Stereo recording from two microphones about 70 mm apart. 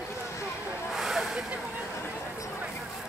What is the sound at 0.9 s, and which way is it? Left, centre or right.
Snake, centre.